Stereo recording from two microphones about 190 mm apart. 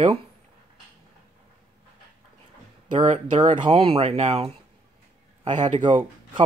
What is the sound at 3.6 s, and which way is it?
Speech, 30° right (ahead or behind).